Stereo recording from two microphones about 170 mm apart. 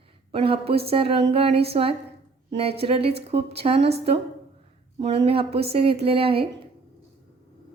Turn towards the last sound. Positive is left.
turn(degrees=-35)  # may be behind; listen again after turning